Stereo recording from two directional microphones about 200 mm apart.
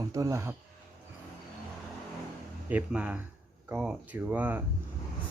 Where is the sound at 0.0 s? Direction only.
15° right (ahead or behind).